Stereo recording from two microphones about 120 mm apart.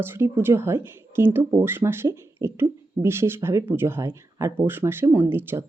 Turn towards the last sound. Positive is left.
turn(degrees=-20)  # may be behind; listen again after turning